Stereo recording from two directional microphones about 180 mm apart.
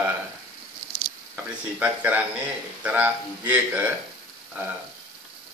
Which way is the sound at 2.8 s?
10° right (ahead or behind).